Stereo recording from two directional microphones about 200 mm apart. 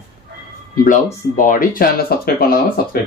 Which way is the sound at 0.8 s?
40° left (ahead or behind).